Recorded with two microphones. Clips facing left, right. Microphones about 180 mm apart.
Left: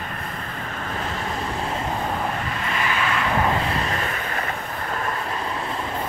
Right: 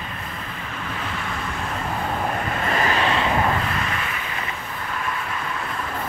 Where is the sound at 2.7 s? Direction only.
40° right (ahead or behind).